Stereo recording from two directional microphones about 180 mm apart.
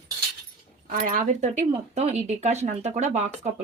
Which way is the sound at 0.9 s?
50° right (ahead or behind).